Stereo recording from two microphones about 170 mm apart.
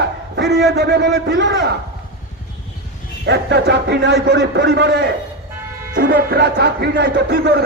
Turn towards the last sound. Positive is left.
turn(degrees=-75)  # may be behind; listen again after turning